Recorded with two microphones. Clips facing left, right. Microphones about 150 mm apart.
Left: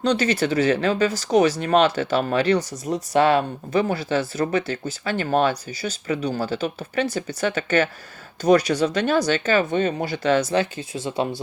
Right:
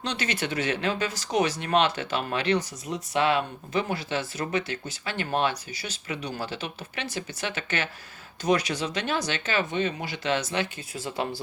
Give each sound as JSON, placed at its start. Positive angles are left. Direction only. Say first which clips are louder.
{"t": 0.2, "sound": "speech", "louder": "left 9 dB", "side_deg": 35}
{"t": 10.9, "sound": "speech", "louder": "left 6 dB", "side_deg": 20}